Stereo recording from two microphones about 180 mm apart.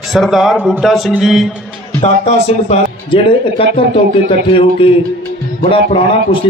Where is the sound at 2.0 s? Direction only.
35° left (ahead or behind).